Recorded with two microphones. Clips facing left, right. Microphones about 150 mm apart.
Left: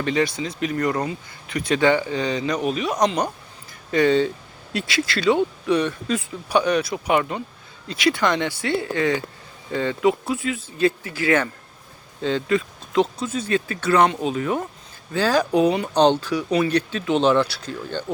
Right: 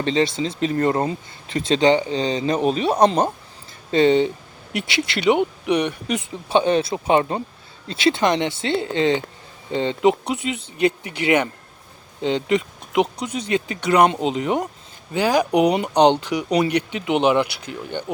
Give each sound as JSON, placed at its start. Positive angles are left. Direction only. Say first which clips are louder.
{"t": 0.0, "sound": "speech", "louder": "right 2 dB", "side_deg": -25}